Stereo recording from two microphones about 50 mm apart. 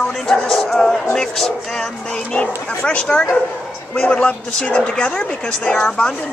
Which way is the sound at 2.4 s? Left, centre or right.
Left.